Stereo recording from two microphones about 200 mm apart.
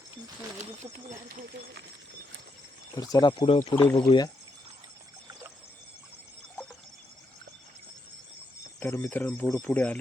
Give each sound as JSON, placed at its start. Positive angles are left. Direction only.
{"t": 2.9, "sound": "speech", "side_deg": 20}
{"t": 3.6, "sound": "speech", "side_deg": 15}
{"t": 8.8, "sound": "speech", "side_deg": 10}